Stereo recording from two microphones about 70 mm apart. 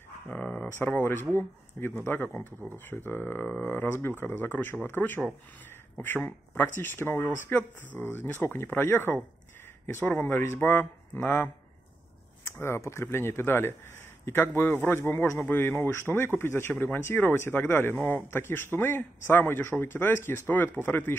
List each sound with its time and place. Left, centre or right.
0.3 s speech: centre
0.7 s speech: left
12.4 s speech: left